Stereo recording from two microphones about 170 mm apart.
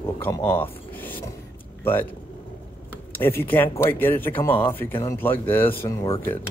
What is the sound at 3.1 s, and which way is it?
Speech, 10° left (ahead or behind).